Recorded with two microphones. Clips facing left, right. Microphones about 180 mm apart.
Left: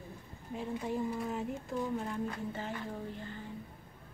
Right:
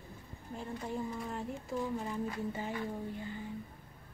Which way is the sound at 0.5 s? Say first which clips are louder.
Left 3 dB; centre (ahead or behind).